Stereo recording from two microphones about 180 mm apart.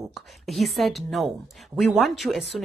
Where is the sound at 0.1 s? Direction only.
Centre (ahead or behind).